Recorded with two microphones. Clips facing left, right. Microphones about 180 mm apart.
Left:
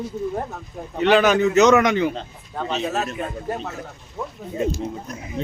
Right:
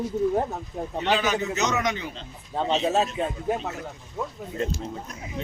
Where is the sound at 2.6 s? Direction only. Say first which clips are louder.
Right 2 dB; 25° right (ahead or behind).